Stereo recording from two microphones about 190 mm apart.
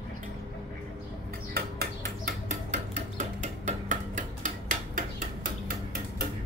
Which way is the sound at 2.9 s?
40° right (ahead or behind).